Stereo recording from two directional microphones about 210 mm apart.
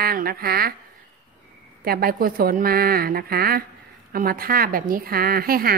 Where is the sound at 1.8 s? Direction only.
45° right (ahead or behind).